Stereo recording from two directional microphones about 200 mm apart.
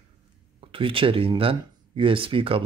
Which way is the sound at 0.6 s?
25° right (ahead or behind).